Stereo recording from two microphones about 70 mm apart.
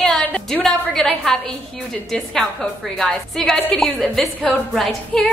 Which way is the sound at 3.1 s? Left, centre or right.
Centre.